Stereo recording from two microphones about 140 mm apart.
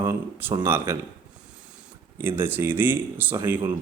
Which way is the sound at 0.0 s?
15° right (ahead or behind).